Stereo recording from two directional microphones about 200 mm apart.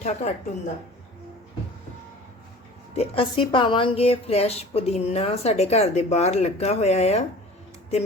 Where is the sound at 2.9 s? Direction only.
30° left (ahead or behind).